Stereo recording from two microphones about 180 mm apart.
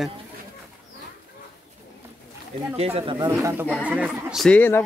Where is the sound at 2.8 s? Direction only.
30° right (ahead or behind).